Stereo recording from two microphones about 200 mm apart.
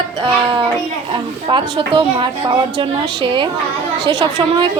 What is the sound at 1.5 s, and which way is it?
A child's voice, 25° right (ahead or behind).